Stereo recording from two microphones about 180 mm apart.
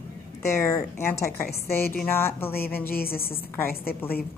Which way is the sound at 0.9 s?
15° left (ahead or behind).